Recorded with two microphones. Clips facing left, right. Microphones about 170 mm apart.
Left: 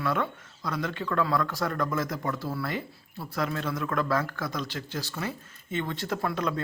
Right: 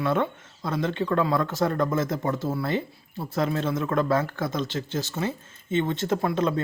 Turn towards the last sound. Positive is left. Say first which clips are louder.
# right 5 dB
turn(degrees=-25)  # may be behind; listen again after turning